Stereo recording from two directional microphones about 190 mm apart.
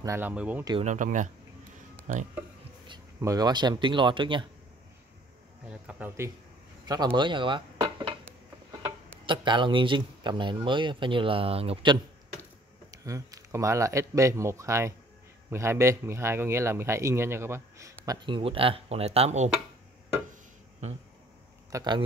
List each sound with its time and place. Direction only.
0.0 s speech: 10° right (ahead or behind)
0.7 s speech: 40° right (ahead or behind)
2.9 s speech: 20° right (ahead or behind)
5.7 s speech: 5° right (ahead or behind); by 19.5 s 35° right (ahead or behind)
20.8 s speech: 35° right (ahead or behind)
21.7 s speech: 25° right (ahead or behind)